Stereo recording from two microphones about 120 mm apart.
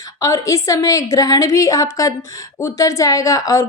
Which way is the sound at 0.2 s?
30° left (ahead or behind).